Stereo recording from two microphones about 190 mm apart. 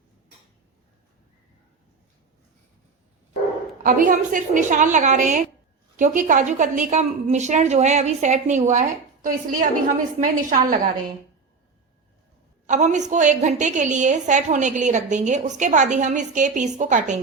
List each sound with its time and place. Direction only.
3.8 s a woman's voice: 45° right (ahead or behind)
12.6 s a woman's voice: 40° right (ahead or behind)